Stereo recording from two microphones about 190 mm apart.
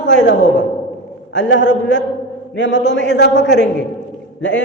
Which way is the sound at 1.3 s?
70° left (ahead or behind).